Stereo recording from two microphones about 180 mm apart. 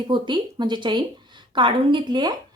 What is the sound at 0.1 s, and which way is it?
A woman's voice, 25° right (ahead or behind).